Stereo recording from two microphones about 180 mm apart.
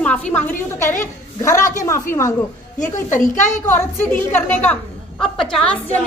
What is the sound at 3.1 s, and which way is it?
Speech, 40° left (ahead or behind).